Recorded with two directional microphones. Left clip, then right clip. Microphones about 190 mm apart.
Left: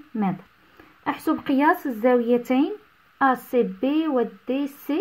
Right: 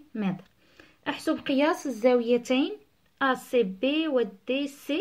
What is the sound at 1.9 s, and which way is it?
Speech, 15° left (ahead or behind).